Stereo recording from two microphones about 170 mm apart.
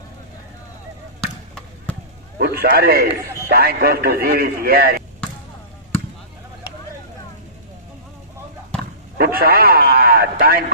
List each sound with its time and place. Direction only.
2.3 s a man's voice: 65° right (ahead or behind)
9.2 s a man's voice: 60° right (ahead or behind)